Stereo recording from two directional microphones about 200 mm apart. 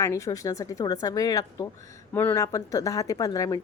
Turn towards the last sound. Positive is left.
turn(degrees=15)  # may be behind; listen again after turning